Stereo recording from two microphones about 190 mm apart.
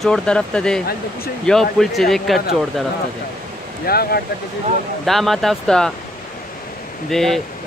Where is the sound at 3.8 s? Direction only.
55° left (ahead or behind).